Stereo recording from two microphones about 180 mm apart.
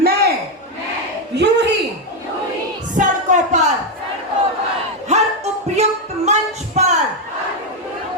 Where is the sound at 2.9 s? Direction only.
45° right (ahead or behind).